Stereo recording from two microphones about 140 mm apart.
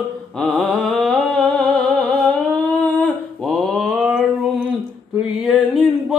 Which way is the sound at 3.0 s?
Centre (ahead or behind).